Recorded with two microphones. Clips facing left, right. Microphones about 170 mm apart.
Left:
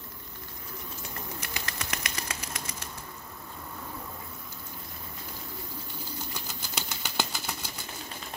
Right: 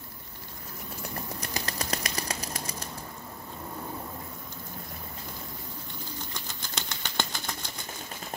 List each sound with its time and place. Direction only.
1.4 s bird flight: 35° right (ahead or behind)
6.1 s bird flight: 10° left (ahead or behind)